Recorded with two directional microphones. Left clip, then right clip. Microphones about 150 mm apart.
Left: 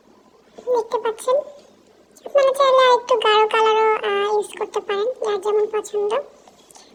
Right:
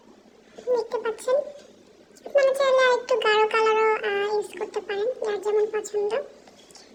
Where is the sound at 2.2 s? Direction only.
20° left (ahead or behind).